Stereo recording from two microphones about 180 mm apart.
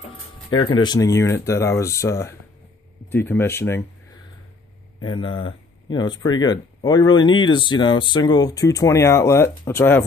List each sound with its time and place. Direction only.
0.5 s speech: 25° left (ahead or behind)
5.0 s speech: 25° left (ahead or behind)